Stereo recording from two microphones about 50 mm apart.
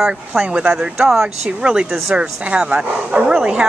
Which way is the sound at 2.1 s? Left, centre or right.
Right.